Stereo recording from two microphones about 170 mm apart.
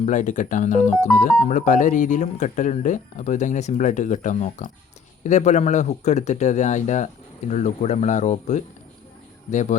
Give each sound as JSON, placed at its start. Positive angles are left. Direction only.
{"t": 0.0, "sound": "speech", "side_deg": 45}